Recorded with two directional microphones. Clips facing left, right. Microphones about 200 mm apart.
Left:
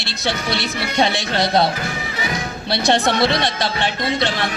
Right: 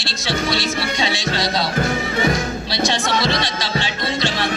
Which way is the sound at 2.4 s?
60° left (ahead or behind).